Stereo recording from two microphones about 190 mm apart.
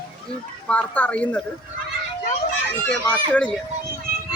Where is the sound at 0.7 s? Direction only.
5° left (ahead or behind).